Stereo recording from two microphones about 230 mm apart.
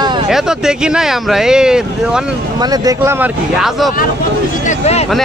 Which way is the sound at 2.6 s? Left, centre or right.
Centre.